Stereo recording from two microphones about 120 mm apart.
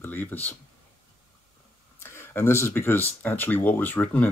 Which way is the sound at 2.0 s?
20° left (ahead or behind).